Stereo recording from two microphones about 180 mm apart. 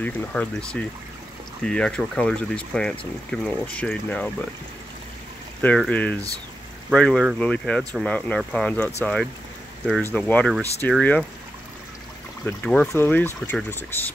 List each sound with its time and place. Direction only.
0.0 s speech: 5° left (ahead or behind)
5.9 s speech: 10° left (ahead or behind)
12.4 s speech: 5° left (ahead or behind)